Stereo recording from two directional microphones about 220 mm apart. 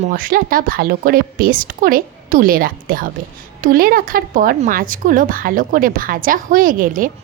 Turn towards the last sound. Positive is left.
turn(degrees=-40)  # may be behind; listen again after turning